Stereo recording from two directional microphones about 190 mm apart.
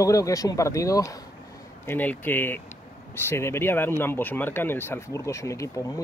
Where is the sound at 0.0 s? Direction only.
15° left (ahead or behind).